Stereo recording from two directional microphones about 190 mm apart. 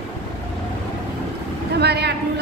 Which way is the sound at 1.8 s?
60° right (ahead or behind).